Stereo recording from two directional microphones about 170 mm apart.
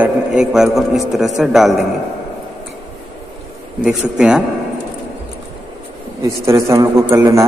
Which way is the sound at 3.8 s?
5° right (ahead or behind).